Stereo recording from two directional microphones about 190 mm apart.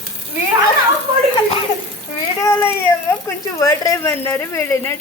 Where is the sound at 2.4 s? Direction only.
15° left (ahead or behind).